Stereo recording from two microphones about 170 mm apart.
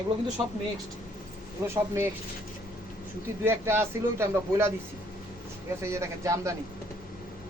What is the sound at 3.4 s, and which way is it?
A man's voice, 15° right (ahead or behind).